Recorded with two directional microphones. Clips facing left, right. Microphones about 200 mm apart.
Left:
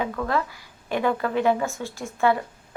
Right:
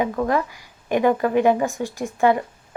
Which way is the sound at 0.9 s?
15° right (ahead or behind).